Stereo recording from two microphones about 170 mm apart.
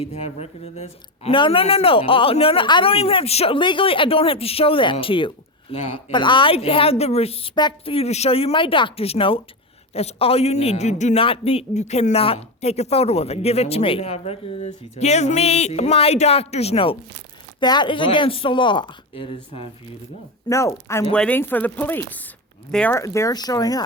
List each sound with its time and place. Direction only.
0.0 s a man's voice: 35° left (ahead or behind)
20.5 s speech: 15° left (ahead or behind)